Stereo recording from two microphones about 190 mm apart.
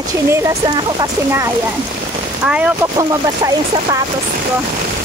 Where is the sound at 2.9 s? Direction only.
20° right (ahead or behind).